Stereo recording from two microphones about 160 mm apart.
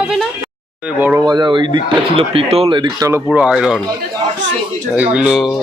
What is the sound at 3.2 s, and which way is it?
Speech, 5° right (ahead or behind).